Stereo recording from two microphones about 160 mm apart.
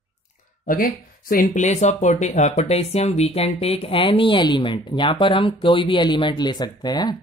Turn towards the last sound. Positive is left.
turn(degrees=25)  # may be behind; listen again after turning